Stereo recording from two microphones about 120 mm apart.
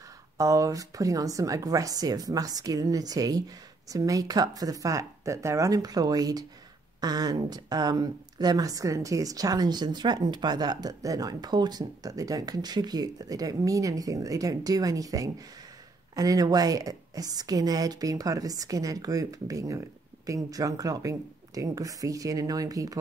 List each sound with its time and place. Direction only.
0.4 s a woman's voice: 30° right (ahead or behind)